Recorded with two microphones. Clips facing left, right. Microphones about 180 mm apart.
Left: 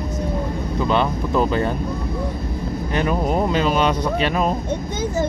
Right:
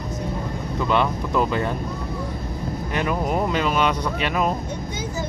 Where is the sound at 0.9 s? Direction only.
25° left (ahead or behind).